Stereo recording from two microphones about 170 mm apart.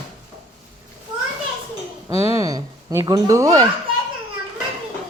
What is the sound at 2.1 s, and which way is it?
Speech, 20° right (ahead or behind).